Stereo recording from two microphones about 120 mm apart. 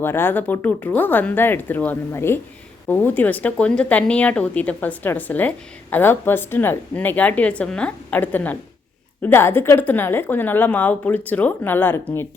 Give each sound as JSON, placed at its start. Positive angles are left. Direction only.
{"t": 0.0, "sound": "speech", "side_deg": 20}